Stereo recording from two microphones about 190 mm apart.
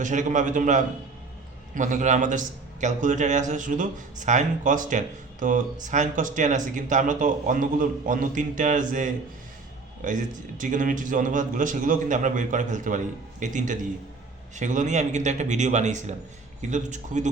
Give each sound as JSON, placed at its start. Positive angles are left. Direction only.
{"t": 0.0, "sound": "speech", "side_deg": -40}